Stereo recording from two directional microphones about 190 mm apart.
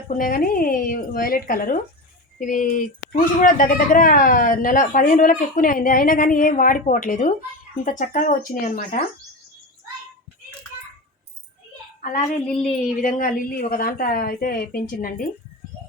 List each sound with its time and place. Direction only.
0.1 s speech: 45° left (ahead or behind)
12.0 s speech: 35° left (ahead or behind)
13.0 s speech: 45° left (ahead or behind)